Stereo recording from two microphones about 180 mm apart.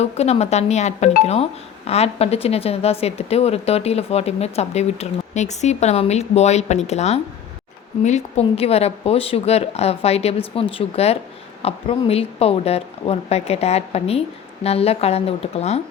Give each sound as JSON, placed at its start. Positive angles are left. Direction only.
{"t": 0.0, "sound": "a woman's voice", "side_deg": 35}